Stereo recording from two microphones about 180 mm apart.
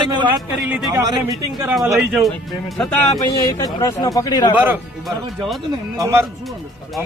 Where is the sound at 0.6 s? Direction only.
5° right (ahead or behind).